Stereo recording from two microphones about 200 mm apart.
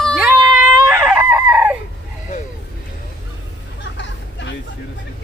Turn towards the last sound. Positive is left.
turn(degrees=60)  # may be behind; listen again after turning